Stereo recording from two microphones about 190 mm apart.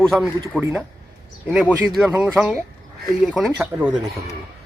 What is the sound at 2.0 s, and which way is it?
A man's voice, centre (ahead or behind).